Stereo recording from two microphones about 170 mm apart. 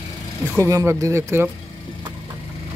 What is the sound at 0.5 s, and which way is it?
Speech, 20° right (ahead or behind).